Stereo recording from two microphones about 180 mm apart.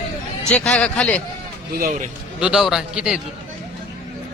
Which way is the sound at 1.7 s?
55° right (ahead or behind).